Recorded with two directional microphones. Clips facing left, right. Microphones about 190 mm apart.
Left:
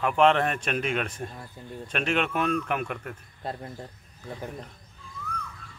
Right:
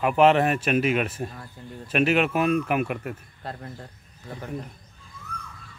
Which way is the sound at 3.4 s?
20° left (ahead or behind).